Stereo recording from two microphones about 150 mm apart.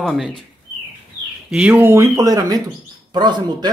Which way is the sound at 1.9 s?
20° right (ahead or behind).